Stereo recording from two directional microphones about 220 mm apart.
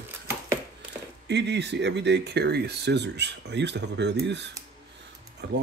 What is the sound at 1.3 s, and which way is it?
Speech, 50° right (ahead or behind).